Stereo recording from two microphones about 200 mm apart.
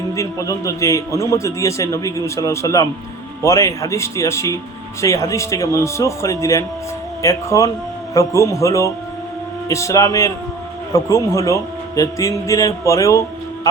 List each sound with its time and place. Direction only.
0.2 s a man's voice: 15° left (ahead or behind)